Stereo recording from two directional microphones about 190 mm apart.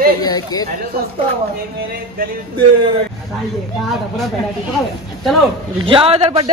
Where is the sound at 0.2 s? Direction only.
20° left (ahead or behind).